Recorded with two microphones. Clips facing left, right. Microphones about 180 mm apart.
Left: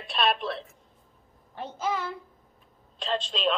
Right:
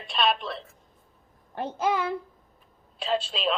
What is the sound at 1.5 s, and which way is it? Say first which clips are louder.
Speech: right 4 dB; 60° right (ahead or behind).